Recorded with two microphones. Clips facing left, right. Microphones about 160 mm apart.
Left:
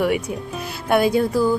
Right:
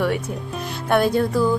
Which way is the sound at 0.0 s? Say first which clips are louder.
Left 2 dB; 10° left (ahead or behind).